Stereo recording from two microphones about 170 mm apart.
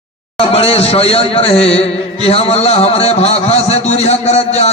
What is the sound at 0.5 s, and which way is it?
A man's voice, 35° left (ahead or behind).